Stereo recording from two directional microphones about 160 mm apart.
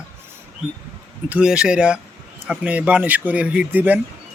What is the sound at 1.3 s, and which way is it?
Speech, 5° right (ahead or behind).